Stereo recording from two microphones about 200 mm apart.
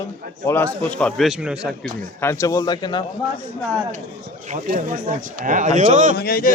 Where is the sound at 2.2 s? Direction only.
15° left (ahead or behind).